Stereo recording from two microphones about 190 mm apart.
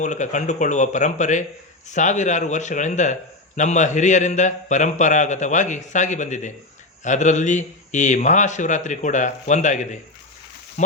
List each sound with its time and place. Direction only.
0.0 s a man's voice: 40° left (ahead or behind)